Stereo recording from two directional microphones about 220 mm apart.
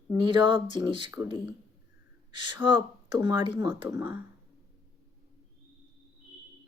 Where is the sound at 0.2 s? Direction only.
20° right (ahead or behind).